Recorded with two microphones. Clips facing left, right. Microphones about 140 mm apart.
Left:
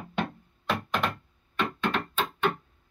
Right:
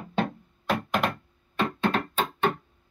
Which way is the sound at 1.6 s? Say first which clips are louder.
Right 3 dB; 35° right (ahead or behind).